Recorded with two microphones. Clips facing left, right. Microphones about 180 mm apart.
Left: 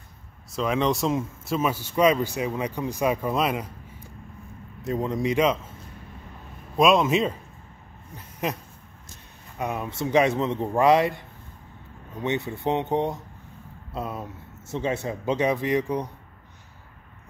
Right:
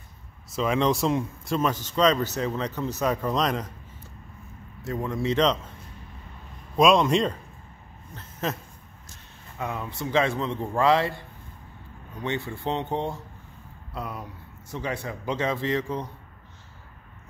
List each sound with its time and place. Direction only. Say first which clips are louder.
0.5 s speech: even; centre (ahead or behind)
6.8 s a man's voice: even; 5° left (ahead or behind)
9.6 s a man's voice: left 3 dB; 20° left (ahead or behind)